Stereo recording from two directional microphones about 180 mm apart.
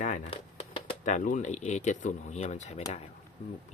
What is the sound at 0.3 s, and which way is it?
Speech, 35° left (ahead or behind).